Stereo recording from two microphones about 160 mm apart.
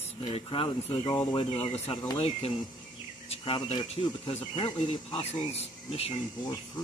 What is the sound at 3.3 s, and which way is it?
Speech, 35° left (ahead or behind).